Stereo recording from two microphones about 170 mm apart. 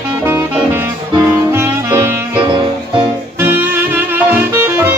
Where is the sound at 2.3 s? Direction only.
30° right (ahead or behind).